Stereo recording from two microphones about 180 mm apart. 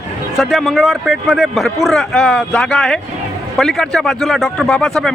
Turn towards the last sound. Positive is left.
turn(degrees=0)  # may be behind; listen again after turning